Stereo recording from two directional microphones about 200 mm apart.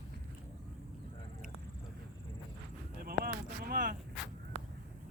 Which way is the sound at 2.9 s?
50° right (ahead or behind).